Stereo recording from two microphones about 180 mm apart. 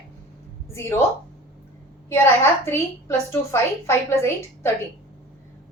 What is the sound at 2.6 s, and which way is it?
A woman's voice, 15° left (ahead or behind).